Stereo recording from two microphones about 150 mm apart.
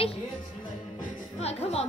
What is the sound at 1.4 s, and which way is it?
Speech, 45° left (ahead or behind).